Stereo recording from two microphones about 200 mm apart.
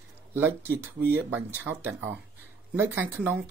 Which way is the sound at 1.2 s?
10° right (ahead or behind).